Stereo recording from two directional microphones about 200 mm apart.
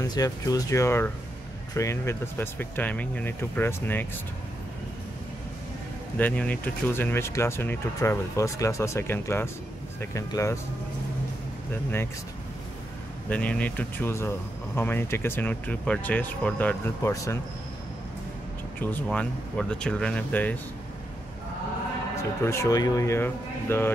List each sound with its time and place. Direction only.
0.0 s speech: 20° left (ahead or behind)
6.1 s speech: 10° left (ahead or behind)
13.3 s speech: 5° left (ahead or behind)
18.8 s speech: 10° left (ahead or behind)
22.4 s speech: 15° left (ahead or behind)